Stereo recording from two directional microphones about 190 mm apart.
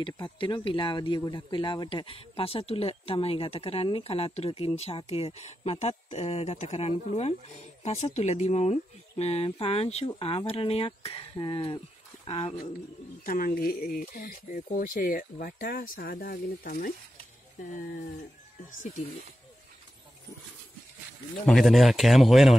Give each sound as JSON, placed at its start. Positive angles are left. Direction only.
{"t": 0.0, "sound": "speech", "side_deg": 25}
{"t": 13.2, "sound": "speech", "side_deg": 50}
{"t": 21.5, "sound": "speech", "side_deg": 0}